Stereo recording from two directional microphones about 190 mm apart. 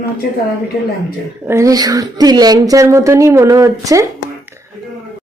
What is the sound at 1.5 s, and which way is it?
Speech, 15° right (ahead or behind).